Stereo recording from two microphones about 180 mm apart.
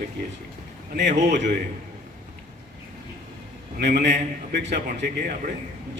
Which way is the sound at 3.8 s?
70° right (ahead or behind).